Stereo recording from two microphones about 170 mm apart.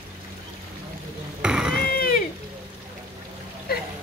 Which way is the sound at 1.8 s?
65° left (ahead or behind).